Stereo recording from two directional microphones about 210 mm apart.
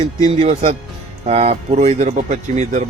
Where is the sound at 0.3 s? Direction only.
30° right (ahead or behind).